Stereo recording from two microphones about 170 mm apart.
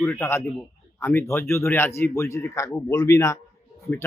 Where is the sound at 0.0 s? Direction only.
15° left (ahead or behind).